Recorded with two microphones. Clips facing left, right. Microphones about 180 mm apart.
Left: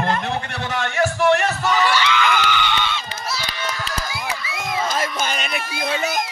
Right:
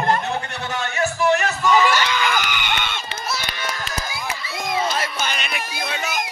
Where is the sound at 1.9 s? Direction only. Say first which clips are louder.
Left 1 dB; 45° right (ahead or behind).